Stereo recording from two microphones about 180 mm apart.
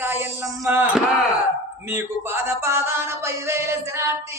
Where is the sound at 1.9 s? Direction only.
15° right (ahead or behind).